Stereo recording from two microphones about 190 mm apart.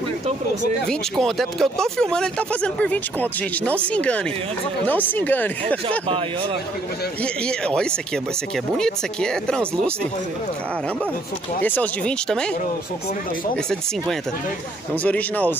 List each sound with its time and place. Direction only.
0.8 s speech: centre (ahead or behind)
5.9 s speech: 30° right (ahead or behind)
7.4 s speech: 5° left (ahead or behind)
11.6 s speech: 10° left (ahead or behind)
15.0 s speech: 10° left (ahead or behind)